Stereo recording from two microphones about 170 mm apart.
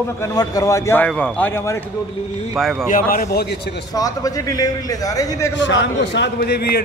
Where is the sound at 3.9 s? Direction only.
20° left (ahead or behind).